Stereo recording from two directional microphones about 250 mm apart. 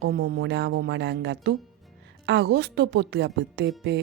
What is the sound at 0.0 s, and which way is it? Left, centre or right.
Speech, right.